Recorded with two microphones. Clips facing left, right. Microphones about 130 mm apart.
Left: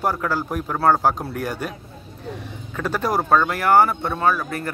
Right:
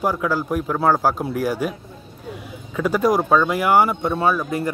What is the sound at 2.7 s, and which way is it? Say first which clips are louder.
A man's voice: right 4 dB; 10° right (ahead or behind).